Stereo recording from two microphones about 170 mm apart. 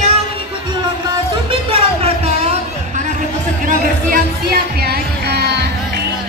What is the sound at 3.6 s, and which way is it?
Music, 60° right (ahead or behind).